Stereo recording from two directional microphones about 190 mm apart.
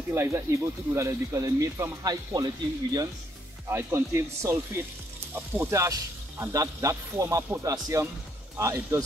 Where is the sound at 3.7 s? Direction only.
10° right (ahead or behind).